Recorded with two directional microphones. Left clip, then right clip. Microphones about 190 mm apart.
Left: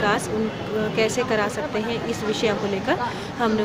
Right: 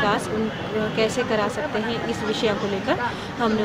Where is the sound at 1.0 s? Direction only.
10° left (ahead or behind).